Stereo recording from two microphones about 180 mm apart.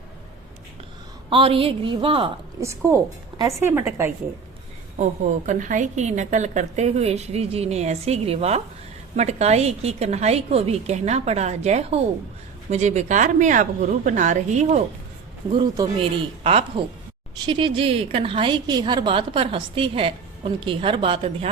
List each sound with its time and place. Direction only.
1.3 s a woman's voice: 30° right (ahead or behind)
2.6 s a woman's voice: 15° right (ahead or behind)
4.9 s a woman's voice: 40° right (ahead or behind)
15.5 s a woman's voice: 30° right (ahead or behind)